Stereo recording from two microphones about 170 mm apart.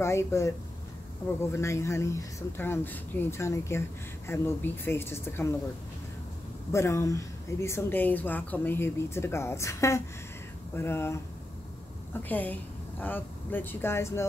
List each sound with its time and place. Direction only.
0.0 s speech: 15° left (ahead or behind)
6.7 s speech: 15° left (ahead or behind)